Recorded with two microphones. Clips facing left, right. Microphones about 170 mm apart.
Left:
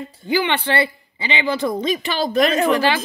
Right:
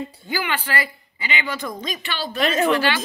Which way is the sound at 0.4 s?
30° left (ahead or behind).